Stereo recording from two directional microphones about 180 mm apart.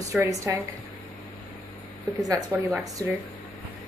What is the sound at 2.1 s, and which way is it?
Speech, 20° right (ahead or behind).